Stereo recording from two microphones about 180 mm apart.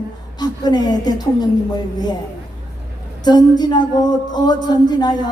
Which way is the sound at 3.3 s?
25° left (ahead or behind).